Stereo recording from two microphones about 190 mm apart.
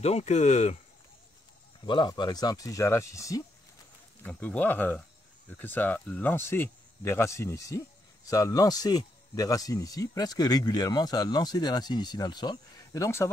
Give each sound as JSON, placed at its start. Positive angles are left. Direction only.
{"t": 0.0, "sound": "speech", "side_deg": 35}
{"t": 1.9, "sound": "speech", "side_deg": 25}